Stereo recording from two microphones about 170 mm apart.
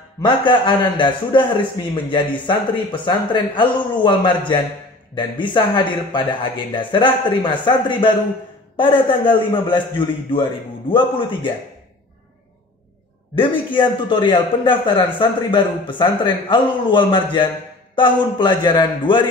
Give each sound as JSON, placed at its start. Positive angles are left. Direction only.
{"t": 0.2, "sound": "a man's voice", "side_deg": 30}
{"t": 13.4, "sound": "a man's voice", "side_deg": 30}